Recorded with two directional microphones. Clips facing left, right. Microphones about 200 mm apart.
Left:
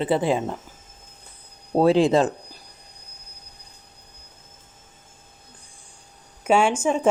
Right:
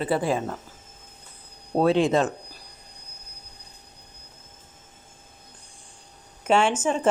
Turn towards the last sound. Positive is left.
turn(degrees=10)  # may be behind; listen again after turning